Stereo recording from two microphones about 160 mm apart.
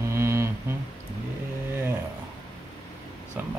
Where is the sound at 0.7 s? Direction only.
15° right (ahead or behind).